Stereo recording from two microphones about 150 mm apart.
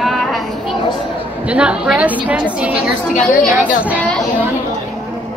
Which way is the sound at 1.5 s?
5° right (ahead or behind).